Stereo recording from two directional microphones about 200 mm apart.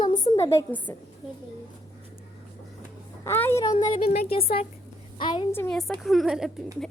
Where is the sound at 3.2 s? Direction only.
10° left (ahead or behind).